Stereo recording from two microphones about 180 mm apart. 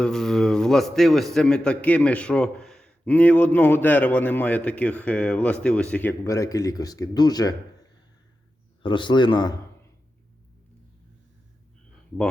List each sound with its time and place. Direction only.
0.0 s a man's voice: 5° left (ahead or behind); by 7.5 s 20° left (ahead or behind)
8.8 s a man's voice: 25° left (ahead or behind)